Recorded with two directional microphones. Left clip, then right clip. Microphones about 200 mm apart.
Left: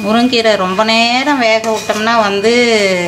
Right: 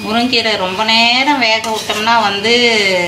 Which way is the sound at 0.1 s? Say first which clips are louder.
Left 3 dB; 60° left (ahead or behind).